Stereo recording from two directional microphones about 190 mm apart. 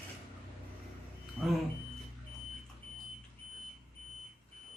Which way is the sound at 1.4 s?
Centre (ahead or behind).